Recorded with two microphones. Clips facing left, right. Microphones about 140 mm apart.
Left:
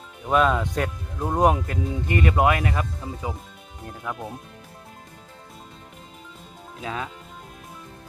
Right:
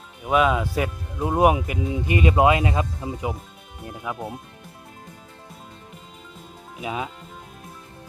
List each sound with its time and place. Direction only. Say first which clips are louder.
0.3 s speech: right 1 dB; 5° right (ahead or behind)
6.8 s speech: right 2 dB; 15° right (ahead or behind)